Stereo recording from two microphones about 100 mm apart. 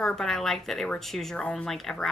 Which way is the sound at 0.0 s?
5° left (ahead or behind).